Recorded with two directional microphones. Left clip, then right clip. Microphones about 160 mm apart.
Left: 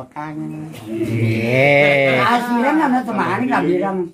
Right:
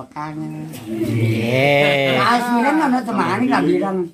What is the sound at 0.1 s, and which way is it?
A child's voice, 10° left (ahead or behind).